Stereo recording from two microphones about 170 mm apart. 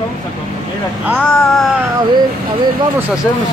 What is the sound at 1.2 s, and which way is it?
Speech, centre (ahead or behind).